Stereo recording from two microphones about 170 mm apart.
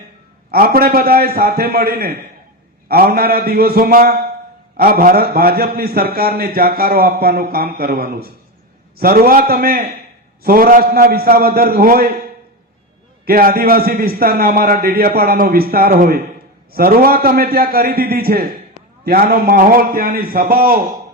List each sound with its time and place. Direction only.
0.5 s a man's voice: 60° right (ahead or behind)
13.2 s a man's voice: 55° right (ahead or behind)